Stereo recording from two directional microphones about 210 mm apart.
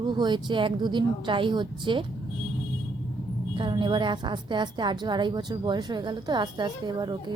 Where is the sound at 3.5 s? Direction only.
20° right (ahead or behind).